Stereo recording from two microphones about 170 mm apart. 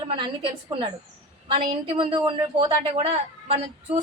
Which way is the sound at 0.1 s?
30° right (ahead or behind).